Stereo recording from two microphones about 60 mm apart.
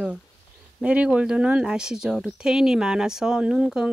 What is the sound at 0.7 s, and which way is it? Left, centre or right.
Speech, centre.